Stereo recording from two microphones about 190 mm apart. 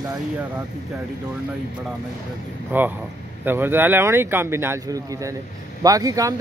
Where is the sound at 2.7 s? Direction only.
10° right (ahead or behind).